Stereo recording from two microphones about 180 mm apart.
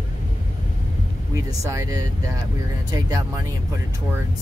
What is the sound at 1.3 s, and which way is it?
Speech, 15° right (ahead or behind).